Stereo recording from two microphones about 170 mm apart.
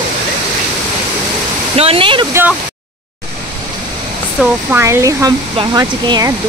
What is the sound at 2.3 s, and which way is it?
Speech, 10° right (ahead or behind).